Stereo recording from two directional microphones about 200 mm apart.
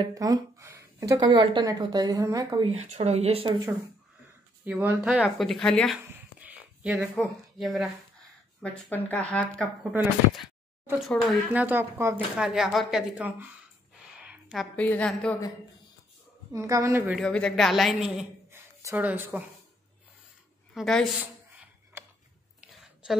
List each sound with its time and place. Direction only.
0.0 s a woman's voice: 20° right (ahead or behind)
4.6 s a woman's voice: 5° right (ahead or behind)
14.2 s a sound: 5° right (ahead or behind)
14.8 s speech: 5° left (ahead or behind)
16.5 s speech: 15° right (ahead or behind)
17.1 s a woman's voice: 5° left (ahead or behind)
20.7 s a woman's voice: centre (ahead or behind)
22.0 s a sound: 10° right (ahead or behind)
23.0 s speech: 5° right (ahead or behind)